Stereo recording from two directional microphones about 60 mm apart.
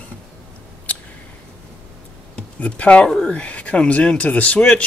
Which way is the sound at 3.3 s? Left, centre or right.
Left.